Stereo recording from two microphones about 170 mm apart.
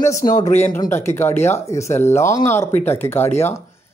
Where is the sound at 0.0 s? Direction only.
20° left (ahead or behind).